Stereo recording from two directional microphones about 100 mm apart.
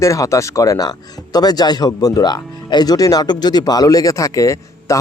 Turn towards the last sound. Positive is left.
turn(degrees=30)  # may be behind; listen again after turning